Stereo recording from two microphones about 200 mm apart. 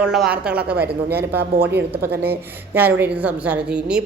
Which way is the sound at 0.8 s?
55° right (ahead or behind).